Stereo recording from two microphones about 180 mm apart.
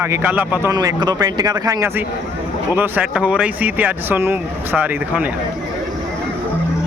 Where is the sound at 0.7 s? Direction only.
20° right (ahead or behind).